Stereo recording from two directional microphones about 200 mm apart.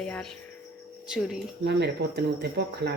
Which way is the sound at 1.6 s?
55° right (ahead or behind).